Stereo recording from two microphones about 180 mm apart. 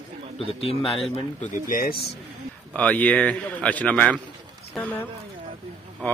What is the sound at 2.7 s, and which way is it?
Speech, 10° left (ahead or behind).